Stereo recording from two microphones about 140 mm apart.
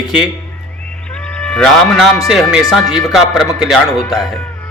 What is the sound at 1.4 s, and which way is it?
A man's voice, 5° left (ahead or behind).